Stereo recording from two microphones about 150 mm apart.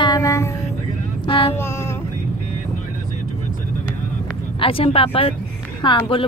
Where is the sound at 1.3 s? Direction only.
35° left (ahead or behind).